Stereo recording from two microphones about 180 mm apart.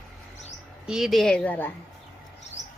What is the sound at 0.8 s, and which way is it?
Speech, centre (ahead or behind).